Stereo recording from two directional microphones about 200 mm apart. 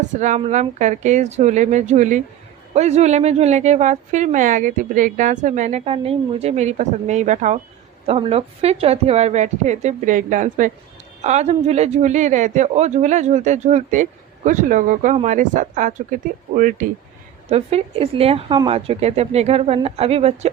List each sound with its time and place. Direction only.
0.2 s speech: 35° right (ahead or behind)
17.5 s speech: 30° right (ahead or behind)